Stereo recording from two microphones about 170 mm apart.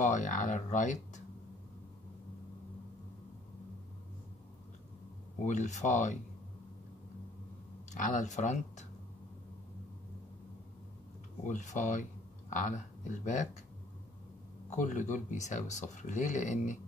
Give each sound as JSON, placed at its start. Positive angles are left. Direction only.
{"t": 0.0, "sound": "speech", "side_deg": 45}
{"t": 5.4, "sound": "speech", "side_deg": 45}
{"t": 7.9, "sound": "speech", "side_deg": 45}
{"t": 11.4, "sound": "speech", "side_deg": 45}
{"t": 14.7, "sound": "speech", "side_deg": 45}